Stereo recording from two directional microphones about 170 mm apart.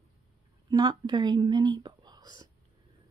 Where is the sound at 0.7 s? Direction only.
25° right (ahead or behind).